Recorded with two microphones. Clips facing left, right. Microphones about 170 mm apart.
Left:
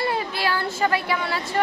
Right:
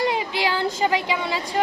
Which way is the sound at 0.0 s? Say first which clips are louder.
Right 2 dB; 15° right (ahead or behind).